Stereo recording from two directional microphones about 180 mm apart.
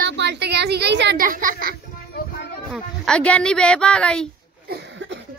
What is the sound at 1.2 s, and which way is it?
Speech, 50° right (ahead or behind).